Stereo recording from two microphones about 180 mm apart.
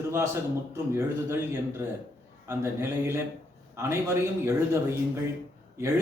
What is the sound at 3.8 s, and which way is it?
Speech, 15° right (ahead or behind).